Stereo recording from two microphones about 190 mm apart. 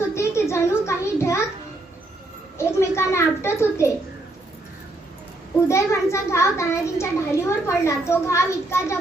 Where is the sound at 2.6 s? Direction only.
15° left (ahead or behind).